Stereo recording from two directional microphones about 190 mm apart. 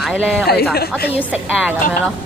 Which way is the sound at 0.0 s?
Centre (ahead or behind).